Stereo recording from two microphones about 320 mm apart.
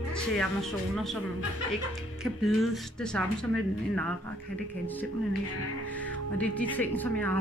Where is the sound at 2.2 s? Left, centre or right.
Centre.